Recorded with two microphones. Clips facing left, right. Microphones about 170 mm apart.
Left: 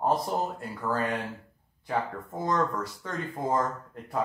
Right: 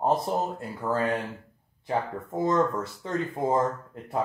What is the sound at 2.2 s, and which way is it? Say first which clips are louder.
Speech: right 6 dB; 25° right (ahead or behind).